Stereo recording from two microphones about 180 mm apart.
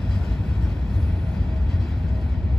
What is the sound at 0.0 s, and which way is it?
Vehicle, 5° left (ahead or behind).